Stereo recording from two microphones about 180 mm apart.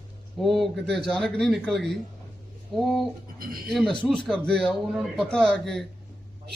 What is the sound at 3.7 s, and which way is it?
Speech, centre (ahead or behind).